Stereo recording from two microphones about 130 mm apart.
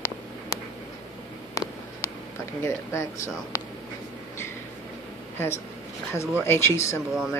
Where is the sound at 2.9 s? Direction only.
20° left (ahead or behind).